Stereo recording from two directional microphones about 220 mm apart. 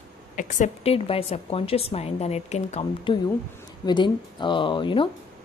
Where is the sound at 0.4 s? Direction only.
35° left (ahead or behind).